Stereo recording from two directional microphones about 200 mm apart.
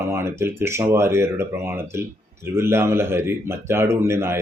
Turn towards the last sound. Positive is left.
turn(degrees=-15)  # may be behind; listen again after turning